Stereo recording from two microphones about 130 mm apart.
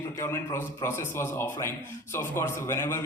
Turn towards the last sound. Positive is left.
turn(degrees=20)  # may be behind; listen again after turning